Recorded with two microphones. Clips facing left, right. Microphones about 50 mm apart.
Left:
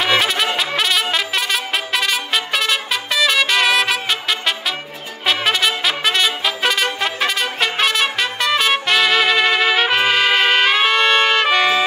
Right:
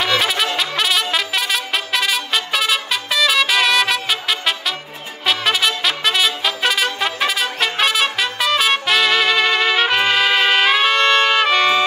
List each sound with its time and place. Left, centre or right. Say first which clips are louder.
0.2 s music: left 1 dB; centre
5.2 s trumpet: even; centre